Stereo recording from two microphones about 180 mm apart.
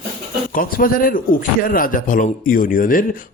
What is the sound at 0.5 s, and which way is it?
A man's voice, 50° left (ahead or behind).